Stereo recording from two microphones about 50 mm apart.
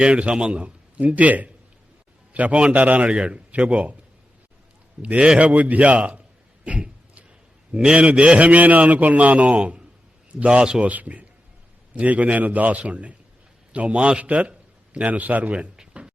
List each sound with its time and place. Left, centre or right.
0.0 s a man's voice: right
5.0 s a man's voice: right
6.7 s a sound: right
7.9 s a man's voice: centre
10.8 s a man's voice: right
15.7 s a sound: centre